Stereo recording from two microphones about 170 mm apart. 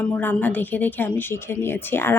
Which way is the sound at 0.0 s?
10° left (ahead or behind).